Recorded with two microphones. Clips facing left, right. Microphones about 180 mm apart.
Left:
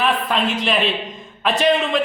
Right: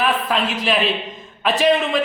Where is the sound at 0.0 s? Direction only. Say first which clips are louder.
Even; centre (ahead or behind).